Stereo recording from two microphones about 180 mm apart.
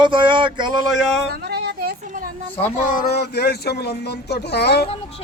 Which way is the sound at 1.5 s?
65° right (ahead or behind).